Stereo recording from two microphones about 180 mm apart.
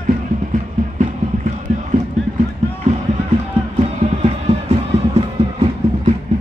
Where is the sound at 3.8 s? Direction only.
40° right (ahead or behind).